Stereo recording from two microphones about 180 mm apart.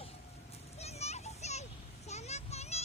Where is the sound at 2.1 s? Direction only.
40° left (ahead or behind).